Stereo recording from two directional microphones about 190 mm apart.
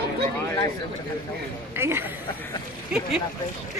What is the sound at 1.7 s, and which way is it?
Speech, 10° right (ahead or behind).